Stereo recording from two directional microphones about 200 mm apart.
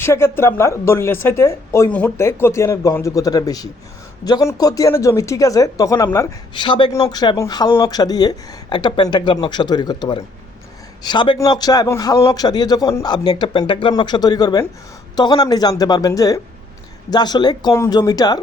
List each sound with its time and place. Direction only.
0.0 s a man's voice: 10° left (ahead or behind)